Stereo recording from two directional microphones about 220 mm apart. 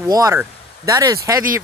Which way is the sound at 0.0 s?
15° right (ahead or behind).